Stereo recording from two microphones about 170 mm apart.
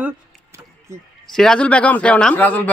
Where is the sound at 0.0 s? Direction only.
15° right (ahead or behind).